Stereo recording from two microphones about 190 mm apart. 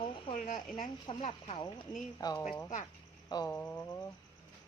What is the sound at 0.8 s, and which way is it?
Speech, 25° left (ahead or behind).